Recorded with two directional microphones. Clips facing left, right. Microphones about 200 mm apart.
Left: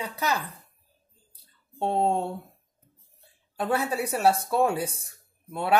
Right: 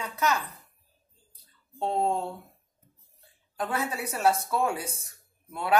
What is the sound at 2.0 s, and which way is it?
Speech, 30° left (ahead or behind).